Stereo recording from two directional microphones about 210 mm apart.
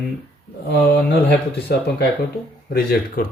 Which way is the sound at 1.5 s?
50° left (ahead or behind).